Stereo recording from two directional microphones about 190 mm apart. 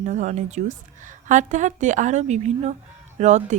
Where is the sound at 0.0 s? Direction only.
40° right (ahead or behind).